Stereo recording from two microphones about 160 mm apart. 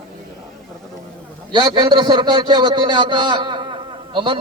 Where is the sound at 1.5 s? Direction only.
30° right (ahead or behind).